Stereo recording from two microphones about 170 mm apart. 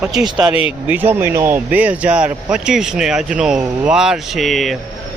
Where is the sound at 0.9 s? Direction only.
10° right (ahead or behind).